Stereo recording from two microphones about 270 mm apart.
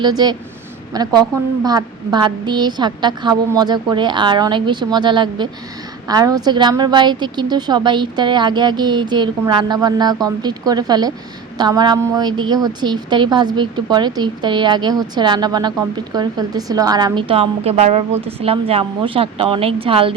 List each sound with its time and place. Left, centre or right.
0.0 s a woman's voice: centre